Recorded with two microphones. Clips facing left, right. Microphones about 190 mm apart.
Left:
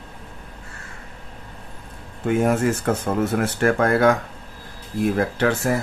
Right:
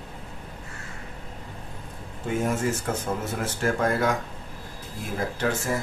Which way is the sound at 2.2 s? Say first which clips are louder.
Left 7 dB; 65° left (ahead or behind).